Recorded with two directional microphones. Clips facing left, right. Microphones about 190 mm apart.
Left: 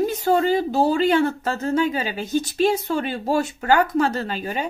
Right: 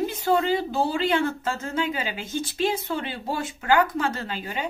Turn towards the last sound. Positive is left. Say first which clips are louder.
# left 5 dB
turn(degrees=40)  # may be behind; listen again after turning